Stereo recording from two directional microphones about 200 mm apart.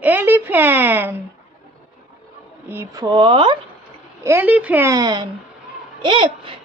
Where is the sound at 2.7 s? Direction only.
15° right (ahead or behind).